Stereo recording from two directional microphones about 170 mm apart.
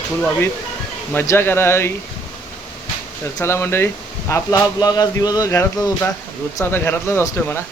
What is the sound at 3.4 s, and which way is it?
Speech, 15° left (ahead or behind).